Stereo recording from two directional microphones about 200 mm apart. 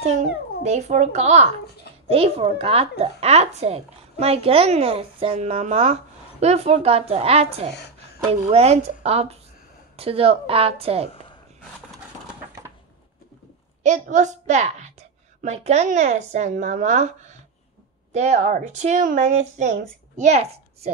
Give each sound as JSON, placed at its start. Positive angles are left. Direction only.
{"t": 0.7, "sound": "a woman's voice", "side_deg": -35}
{"t": 13.8, "sound": "a woman's voice", "side_deg": -35}
{"t": 18.1, "sound": "a woman's voice", "side_deg": -35}